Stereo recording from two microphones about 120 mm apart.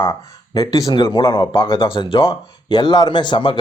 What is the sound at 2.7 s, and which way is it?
Speech, 35° left (ahead or behind).